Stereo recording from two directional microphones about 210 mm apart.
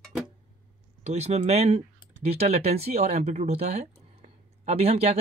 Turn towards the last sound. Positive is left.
turn(degrees=-30)  # may be behind; listen again after turning